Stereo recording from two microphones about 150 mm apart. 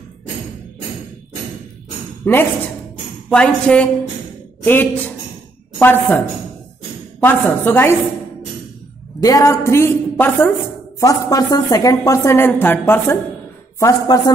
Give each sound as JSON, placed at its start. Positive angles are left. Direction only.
{"t": 2.3, "sound": "a woman's voice", "side_deg": 10}
{"t": 9.2, "sound": "a woman's voice", "side_deg": 20}